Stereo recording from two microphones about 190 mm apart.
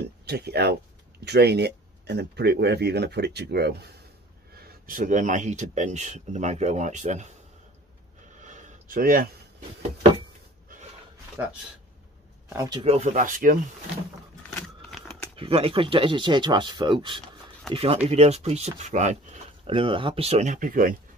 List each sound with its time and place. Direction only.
0.2 s speech: 60° right (ahead or behind)
4.6 s speech: 45° right (ahead or behind)
8.4 s a sound: 40° right (ahead or behind)
11.4 s speech: 10° right (ahead or behind)
12.5 s speech: 20° right (ahead or behind)
12.8 s speech: 35° right (ahead or behind)
15.3 s speech: 30° right (ahead or behind); by 20.9 s 45° right (ahead or behind)